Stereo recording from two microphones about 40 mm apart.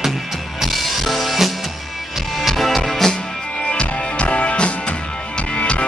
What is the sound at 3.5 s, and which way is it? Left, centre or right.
Music, left.